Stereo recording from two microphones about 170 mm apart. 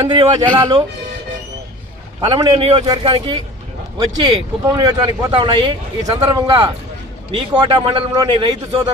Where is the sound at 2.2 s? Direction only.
20° right (ahead or behind).